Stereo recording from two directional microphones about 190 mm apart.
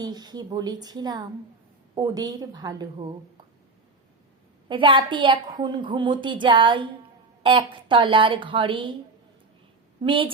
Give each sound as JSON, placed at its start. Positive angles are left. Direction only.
{"t": 0.0, "sound": "a woman's voice", "side_deg": -20}
{"t": 4.7, "sound": "a woman's voice", "side_deg": -25}
{"t": 10.0, "sound": "a woman's voice", "side_deg": -25}